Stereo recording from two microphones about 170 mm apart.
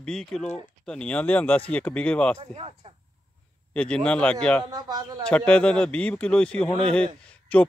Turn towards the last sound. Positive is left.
turn(degrees=5)  # may be behind; listen again after turning